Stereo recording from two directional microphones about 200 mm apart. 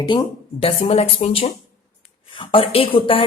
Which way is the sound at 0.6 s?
30° left (ahead or behind).